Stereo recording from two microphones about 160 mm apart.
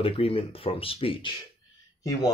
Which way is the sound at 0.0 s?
35° left (ahead or behind).